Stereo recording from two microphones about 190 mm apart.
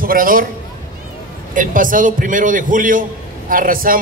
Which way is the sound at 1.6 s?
45° right (ahead or behind).